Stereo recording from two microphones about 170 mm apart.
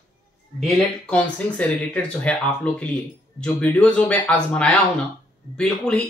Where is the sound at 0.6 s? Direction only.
5° left (ahead or behind).